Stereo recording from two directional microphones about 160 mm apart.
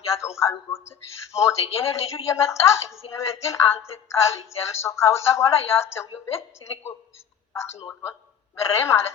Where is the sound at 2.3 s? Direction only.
15° left (ahead or behind).